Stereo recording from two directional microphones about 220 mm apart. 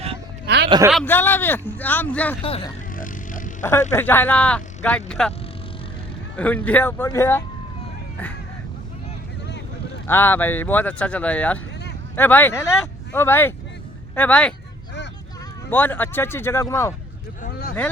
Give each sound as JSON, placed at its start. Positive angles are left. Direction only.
{"t": 0.4, "sound": "a sound", "side_deg": -50}
{"t": 0.9, "sound": "speech", "side_deg": 5}
{"t": 2.9, "sound": "vehicle", "side_deg": 35}
{"t": 3.7, "sound": "speech", "side_deg": 10}
{"t": 6.3, "sound": "speech", "side_deg": 5}
{"t": 10.1, "sound": "speech", "side_deg": 10}
{"t": 15.7, "sound": "speech", "side_deg": 10}
{"t": 17.4, "sound": "speech", "side_deg": 40}